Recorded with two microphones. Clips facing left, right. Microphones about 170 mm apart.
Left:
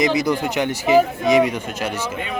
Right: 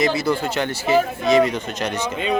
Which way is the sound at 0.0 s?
15° left (ahead or behind).